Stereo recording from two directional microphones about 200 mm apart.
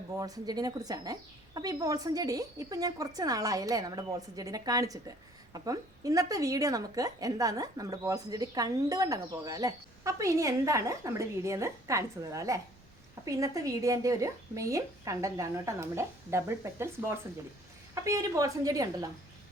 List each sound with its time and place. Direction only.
0.2 s a woman's voice: 20° right (ahead or behind)